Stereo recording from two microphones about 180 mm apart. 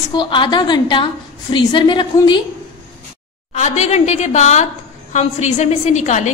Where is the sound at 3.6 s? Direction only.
35° left (ahead or behind).